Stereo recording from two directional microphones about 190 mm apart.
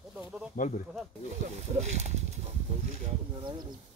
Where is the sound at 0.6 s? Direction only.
45° left (ahead or behind).